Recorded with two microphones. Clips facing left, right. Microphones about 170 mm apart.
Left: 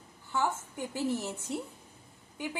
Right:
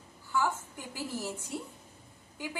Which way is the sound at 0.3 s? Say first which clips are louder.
Even; 20° left (ahead or behind).